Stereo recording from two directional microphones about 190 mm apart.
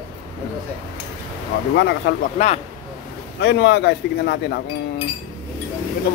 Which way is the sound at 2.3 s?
35° left (ahead or behind).